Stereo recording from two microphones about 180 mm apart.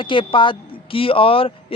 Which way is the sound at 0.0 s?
30° left (ahead or behind).